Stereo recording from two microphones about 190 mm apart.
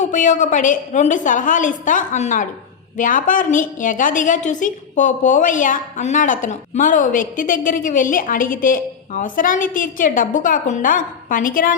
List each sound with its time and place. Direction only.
0.0 s a woman's voice: 40° left (ahead or behind)